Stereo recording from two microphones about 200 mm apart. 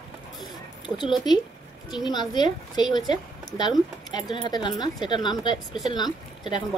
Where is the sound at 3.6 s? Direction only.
20° left (ahead or behind).